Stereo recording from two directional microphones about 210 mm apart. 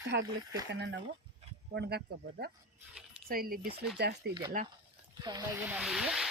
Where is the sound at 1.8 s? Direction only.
50° right (ahead or behind).